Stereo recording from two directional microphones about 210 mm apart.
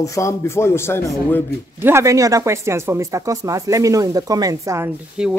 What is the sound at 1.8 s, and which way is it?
Speech, 10° right (ahead or behind).